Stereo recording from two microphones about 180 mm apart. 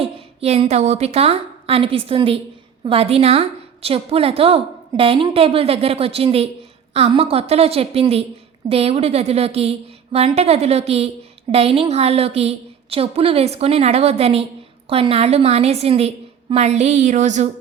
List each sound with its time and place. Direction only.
0.0 s a woman's voice: 35° right (ahead or behind)